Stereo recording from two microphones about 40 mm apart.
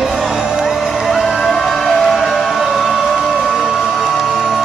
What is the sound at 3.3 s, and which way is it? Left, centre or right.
Music, centre.